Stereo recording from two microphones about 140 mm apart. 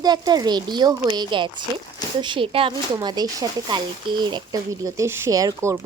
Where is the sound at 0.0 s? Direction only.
30° right (ahead or behind).